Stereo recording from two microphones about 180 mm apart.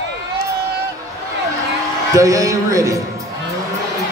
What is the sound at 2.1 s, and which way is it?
Music, 20° right (ahead or behind).